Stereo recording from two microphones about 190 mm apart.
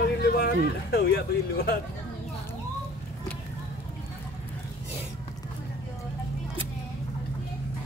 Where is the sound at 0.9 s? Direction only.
55° left (ahead or behind).